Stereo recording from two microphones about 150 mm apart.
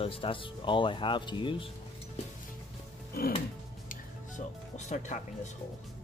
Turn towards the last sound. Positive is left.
turn(degrees=50)  # may be behind; listen again after turning